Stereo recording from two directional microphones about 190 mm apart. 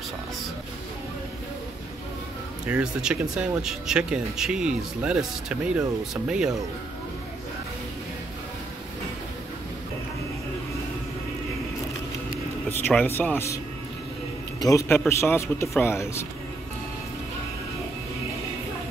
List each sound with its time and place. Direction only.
2.6 s speech: 5° right (ahead or behind)
12.8 s speech: 10° left (ahead or behind)
14.6 s speech: 15° left (ahead or behind)